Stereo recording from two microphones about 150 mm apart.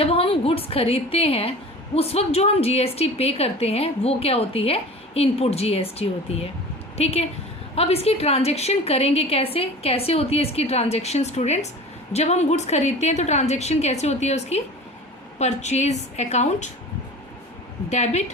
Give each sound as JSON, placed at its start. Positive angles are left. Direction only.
{"t": 0.0, "sound": "a woman's voice", "side_deg": 40}
{"t": 17.8, "sound": "a woman's voice", "side_deg": 50}